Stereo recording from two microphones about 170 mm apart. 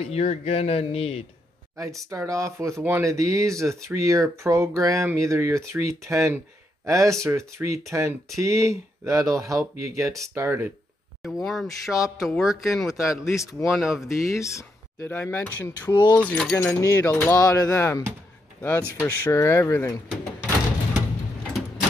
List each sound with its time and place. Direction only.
0.0 s speech: 40° left (ahead or behind)
1.8 s speech: 20° right (ahead or behind)
11.2 s a man's voice: centre (ahead or behind)
14.1 s speech: 20° left (ahead or behind)